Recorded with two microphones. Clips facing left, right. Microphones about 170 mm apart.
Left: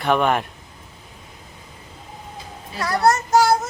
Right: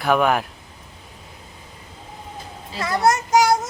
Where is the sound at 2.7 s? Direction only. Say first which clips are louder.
Left 1 dB; 20° right (ahead or behind).